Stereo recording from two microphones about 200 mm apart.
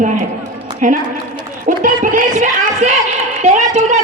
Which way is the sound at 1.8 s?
40° right (ahead or behind).